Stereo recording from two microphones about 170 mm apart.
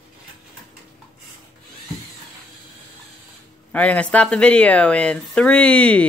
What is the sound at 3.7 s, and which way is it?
Speech, 10° left (ahead or behind).